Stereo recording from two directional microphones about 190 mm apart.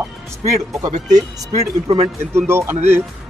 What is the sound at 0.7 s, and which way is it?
Speech, 20° right (ahead or behind).